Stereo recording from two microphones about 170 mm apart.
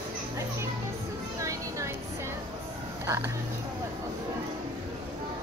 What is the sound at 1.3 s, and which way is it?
Music, 15° right (ahead or behind).